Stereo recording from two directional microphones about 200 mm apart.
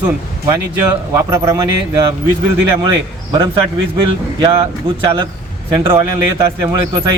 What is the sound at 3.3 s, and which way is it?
Speech, 20° right (ahead or behind).